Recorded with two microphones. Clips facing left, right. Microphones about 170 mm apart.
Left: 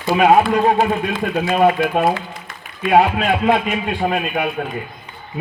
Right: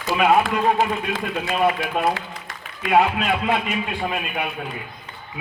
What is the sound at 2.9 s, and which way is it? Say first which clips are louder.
A man's voice: left 4 dB; 55° left (ahead or behind).